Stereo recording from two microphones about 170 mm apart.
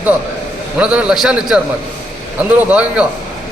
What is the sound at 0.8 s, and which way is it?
A man's voice, 5° right (ahead or behind).